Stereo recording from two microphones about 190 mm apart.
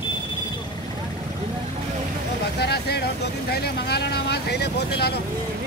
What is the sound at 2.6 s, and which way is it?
Vehicle, 60° left (ahead or behind).